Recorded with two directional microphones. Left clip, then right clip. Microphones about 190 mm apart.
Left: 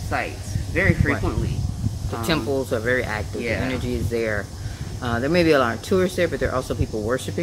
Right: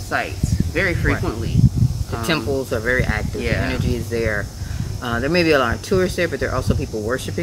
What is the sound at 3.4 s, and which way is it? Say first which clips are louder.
Speech: right 2 dB; 15° right (ahead or behind).